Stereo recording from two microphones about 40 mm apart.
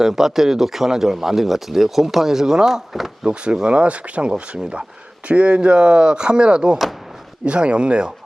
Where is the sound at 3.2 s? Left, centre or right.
Right.